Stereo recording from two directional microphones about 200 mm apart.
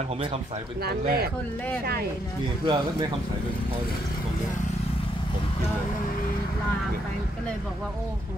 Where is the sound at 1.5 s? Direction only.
10° left (ahead or behind).